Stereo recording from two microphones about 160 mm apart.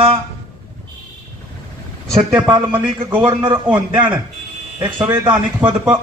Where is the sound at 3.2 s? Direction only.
30° right (ahead or behind).